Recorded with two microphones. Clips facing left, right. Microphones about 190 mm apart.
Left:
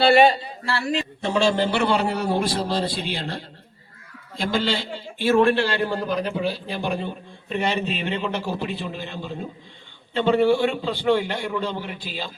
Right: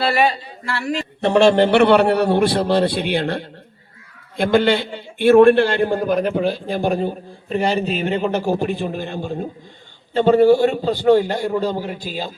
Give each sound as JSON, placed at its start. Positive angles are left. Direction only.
{"t": 0.0, "sound": "a man's voice", "side_deg": 30}
{"t": 1.2, "sound": "a man's voice", "side_deg": -65}